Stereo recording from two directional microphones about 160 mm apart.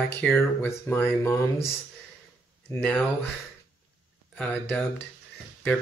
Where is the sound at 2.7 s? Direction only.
10° left (ahead or behind).